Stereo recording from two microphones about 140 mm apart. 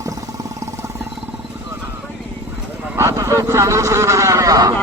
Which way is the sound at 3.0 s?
20° right (ahead or behind).